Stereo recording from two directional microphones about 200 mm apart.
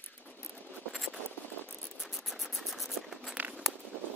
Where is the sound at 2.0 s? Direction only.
Centre (ahead or behind).